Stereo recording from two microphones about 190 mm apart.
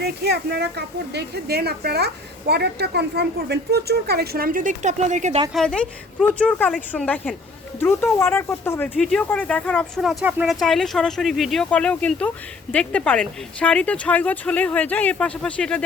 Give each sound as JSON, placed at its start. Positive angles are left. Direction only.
{"t": 0.0, "sound": "a woman's voice", "side_deg": -55}
{"t": 5.5, "sound": "speech", "side_deg": 5}